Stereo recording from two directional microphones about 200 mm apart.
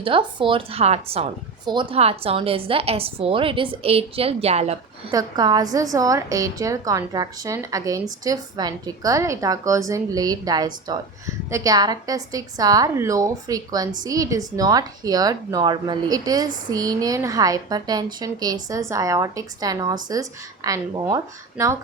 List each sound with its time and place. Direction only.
0.0 s a woman's voice: 25° right (ahead or behind)
5.1 s a woman's voice: 20° right (ahead or behind)